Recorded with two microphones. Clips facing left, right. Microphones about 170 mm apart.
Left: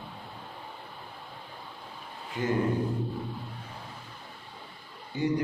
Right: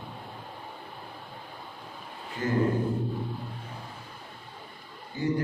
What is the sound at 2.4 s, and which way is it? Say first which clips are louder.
Speech: even; 20° left (ahead or behind).